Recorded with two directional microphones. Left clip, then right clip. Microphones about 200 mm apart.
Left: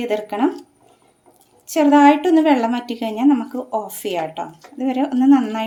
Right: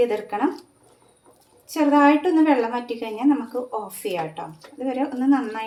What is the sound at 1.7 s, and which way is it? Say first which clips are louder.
A woman's voice: left 5 dB; 55° left (ahead or behind).